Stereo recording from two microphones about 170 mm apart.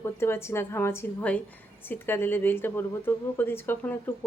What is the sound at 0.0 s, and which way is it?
A woman's voice, 15° left (ahead or behind).